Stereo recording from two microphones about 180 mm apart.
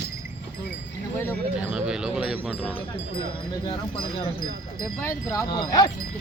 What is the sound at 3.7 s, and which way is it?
Speech, 30° left (ahead or behind).